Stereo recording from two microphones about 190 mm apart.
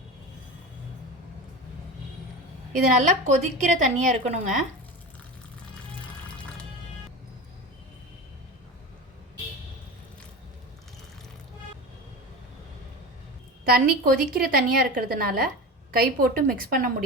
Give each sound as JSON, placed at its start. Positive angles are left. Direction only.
{"t": 3.0, "sound": "a woman's voice", "side_deg": -40}
{"t": 13.7, "sound": "a woman's voice", "side_deg": -50}